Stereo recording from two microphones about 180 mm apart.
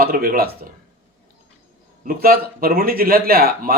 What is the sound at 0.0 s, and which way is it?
Speech, 55° right (ahead or behind).